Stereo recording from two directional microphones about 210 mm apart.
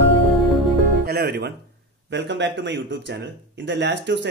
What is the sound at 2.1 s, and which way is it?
Speech, 55° right (ahead or behind).